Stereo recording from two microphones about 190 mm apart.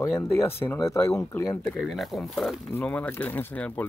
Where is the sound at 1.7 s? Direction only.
Centre (ahead or behind).